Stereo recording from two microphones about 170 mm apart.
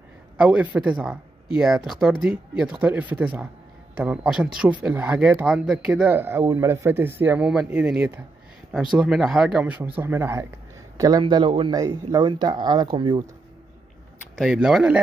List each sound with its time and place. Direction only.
0.4 s speech: 5° right (ahead or behind); by 13.2 s 30° right (ahead or behind)
14.4 s speech: centre (ahead or behind)